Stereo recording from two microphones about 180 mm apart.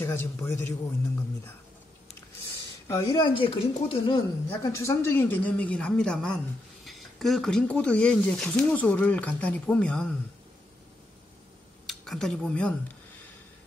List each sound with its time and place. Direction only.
0.0 s speech: 10° left (ahead or behind)
2.9 s speech: 25° left (ahead or behind)
4.5 s speech: 15° left (ahead or behind)
11.8 s speech: centre (ahead or behind)